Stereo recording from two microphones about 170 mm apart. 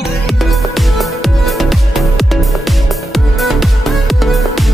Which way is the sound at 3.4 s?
Centre (ahead or behind).